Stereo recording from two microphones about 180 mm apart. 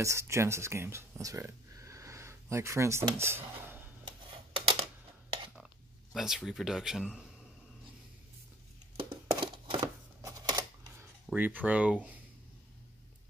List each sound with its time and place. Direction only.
0.0 s speech: 15° right (ahead or behind)
4.6 s a sound: 30° right (ahead or behind)
6.1 s speech: centre (ahead or behind)
8.9 s a sound: 25° right (ahead or behind)
10.2 s camera: 20° right (ahead or behind)
11.3 s speech: 10° right (ahead or behind)